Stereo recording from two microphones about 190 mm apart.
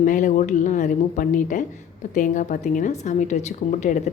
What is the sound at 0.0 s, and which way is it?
A woman's voice, 45° left (ahead or behind).